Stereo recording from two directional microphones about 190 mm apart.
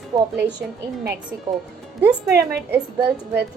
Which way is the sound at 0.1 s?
20° right (ahead or behind).